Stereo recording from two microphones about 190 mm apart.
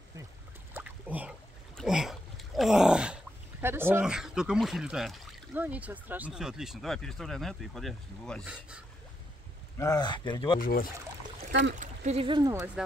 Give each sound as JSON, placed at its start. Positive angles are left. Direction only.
{"t": 0.7, "sound": "boat", "side_deg": -10}
{"t": 1.8, "sound": "a sound", "side_deg": 0}
{"t": 3.6, "sound": "speech", "side_deg": -10}
{"t": 9.8, "sound": "speech", "side_deg": 20}
{"t": 10.6, "sound": "speech", "side_deg": 50}
{"t": 11.7, "sound": "speech", "side_deg": -40}